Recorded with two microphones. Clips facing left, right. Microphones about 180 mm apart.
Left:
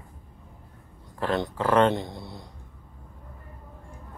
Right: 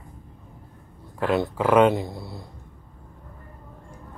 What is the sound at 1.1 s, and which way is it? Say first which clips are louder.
Speech: right 4 dB; 10° right (ahead or behind).